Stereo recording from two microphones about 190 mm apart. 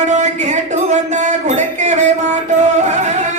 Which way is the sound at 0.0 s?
40° right (ahead or behind).